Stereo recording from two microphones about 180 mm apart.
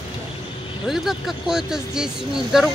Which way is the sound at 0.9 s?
Centre (ahead or behind).